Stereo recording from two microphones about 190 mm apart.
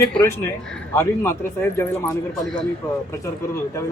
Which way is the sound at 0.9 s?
15° left (ahead or behind).